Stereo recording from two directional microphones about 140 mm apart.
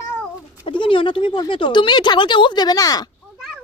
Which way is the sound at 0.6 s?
35° left (ahead or behind).